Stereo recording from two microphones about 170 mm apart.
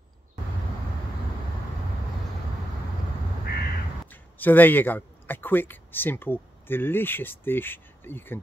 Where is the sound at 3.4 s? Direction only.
65° left (ahead or behind).